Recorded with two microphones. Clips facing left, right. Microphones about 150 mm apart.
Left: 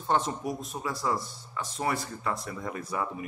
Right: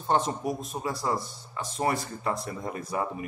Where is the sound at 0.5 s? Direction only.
15° right (ahead or behind).